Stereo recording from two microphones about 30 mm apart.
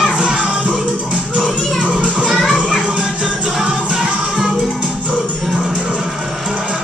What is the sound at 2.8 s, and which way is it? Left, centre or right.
Music, right.